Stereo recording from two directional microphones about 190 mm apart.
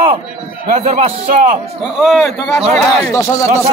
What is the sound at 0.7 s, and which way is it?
Speech, 35° right (ahead or behind).